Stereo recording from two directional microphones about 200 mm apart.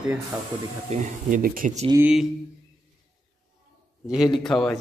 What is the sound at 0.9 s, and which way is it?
Speech, 40° right (ahead or behind).